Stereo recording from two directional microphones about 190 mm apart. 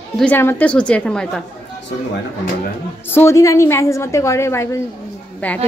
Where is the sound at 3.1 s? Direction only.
15° left (ahead or behind).